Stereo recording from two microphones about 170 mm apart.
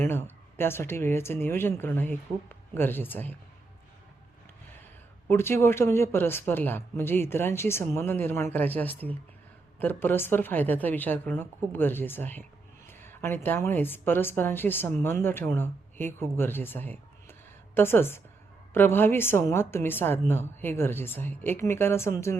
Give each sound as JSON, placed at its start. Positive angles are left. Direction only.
{"t": 0.0, "sound": "a woman's voice", "side_deg": 10}
{"t": 5.3, "sound": "a woman's voice", "side_deg": 15}